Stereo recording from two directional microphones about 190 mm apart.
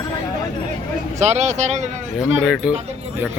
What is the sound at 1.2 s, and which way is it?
Speech, 35° right (ahead or behind).